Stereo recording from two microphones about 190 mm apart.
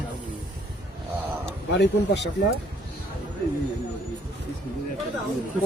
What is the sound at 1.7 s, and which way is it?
Speech, 65° left (ahead or behind).